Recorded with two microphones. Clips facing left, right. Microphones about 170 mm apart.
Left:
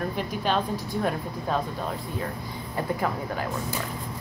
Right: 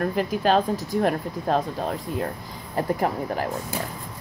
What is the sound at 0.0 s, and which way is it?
Speech, 90° right.